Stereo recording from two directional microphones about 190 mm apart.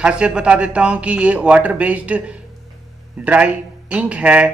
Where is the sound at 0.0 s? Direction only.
5° right (ahead or behind).